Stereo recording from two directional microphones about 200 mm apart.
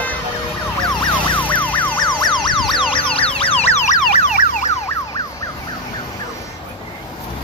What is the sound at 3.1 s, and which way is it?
Emergency vehicle, 30° left (ahead or behind).